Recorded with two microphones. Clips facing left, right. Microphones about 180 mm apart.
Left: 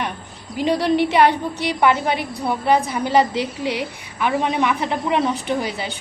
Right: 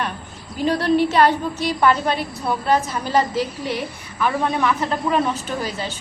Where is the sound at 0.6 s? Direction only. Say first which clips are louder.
Even; 15° left (ahead or behind).